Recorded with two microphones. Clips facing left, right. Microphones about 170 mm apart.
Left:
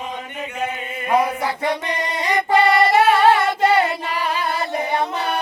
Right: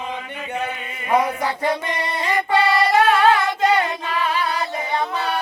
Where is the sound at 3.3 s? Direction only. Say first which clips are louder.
Left 1 dB; 30° left (ahead or behind).